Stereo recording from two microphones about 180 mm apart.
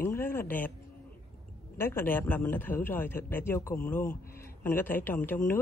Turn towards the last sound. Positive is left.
turn(degrees=10)  # may be behind; listen again after turning